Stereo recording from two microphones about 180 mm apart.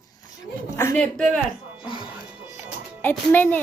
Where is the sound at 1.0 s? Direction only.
5° left (ahead or behind).